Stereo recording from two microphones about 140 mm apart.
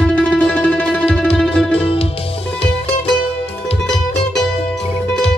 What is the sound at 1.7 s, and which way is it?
Music, 40° left (ahead or behind).